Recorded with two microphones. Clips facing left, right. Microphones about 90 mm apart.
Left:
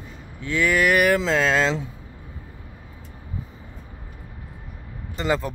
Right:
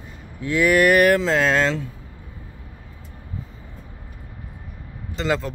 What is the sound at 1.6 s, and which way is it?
Speech, 20° left (ahead or behind).